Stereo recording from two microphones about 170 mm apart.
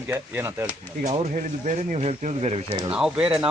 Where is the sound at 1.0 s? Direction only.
45° right (ahead or behind).